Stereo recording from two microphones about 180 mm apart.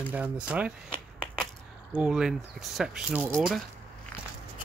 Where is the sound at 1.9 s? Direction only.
5° right (ahead or behind).